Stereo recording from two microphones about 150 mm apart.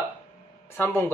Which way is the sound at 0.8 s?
15° left (ahead or behind).